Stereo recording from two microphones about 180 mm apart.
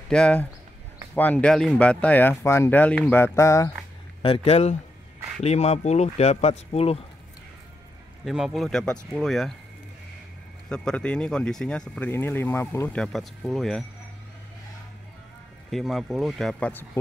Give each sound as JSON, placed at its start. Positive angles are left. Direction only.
{"t": 0.1, "sound": "speech", "side_deg": 5}
{"t": 4.2, "sound": "speech", "side_deg": 35}
{"t": 8.3, "sound": "speech", "side_deg": 0}
{"t": 10.7, "sound": "speech", "side_deg": 5}
{"t": 15.7, "sound": "speech", "side_deg": 0}